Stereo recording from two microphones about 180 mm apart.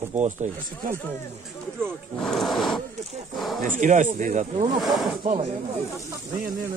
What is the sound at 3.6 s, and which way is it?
Speech, 45° right (ahead or behind).